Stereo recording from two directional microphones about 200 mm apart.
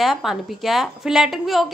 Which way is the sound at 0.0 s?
Centre (ahead or behind).